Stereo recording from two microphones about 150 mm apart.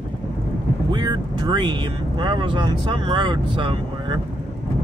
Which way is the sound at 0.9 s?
30° right (ahead or behind).